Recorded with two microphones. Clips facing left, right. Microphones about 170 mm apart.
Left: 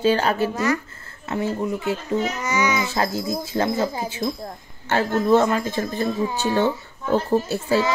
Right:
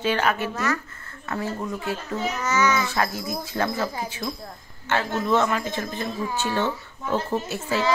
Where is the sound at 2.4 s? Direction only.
10° left (ahead or behind).